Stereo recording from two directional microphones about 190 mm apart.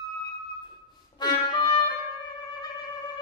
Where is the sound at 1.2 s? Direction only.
25° left (ahead or behind).